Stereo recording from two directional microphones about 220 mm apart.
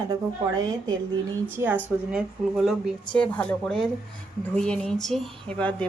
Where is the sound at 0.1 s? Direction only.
15° right (ahead or behind).